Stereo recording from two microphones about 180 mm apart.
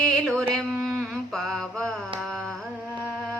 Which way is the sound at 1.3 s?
Centre (ahead or behind).